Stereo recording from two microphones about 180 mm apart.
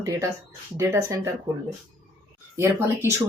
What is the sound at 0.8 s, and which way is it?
Speech, 15° right (ahead or behind).